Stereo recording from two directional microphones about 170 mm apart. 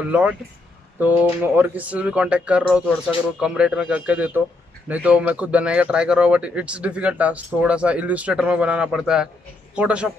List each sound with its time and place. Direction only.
0.0 s a man's voice: 5° right (ahead or behind)